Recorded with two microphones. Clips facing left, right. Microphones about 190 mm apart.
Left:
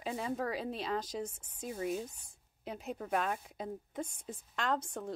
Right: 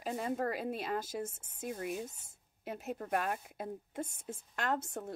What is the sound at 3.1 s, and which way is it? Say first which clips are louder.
A woman's voice: left 1 dB; 5° right (ahead or behind).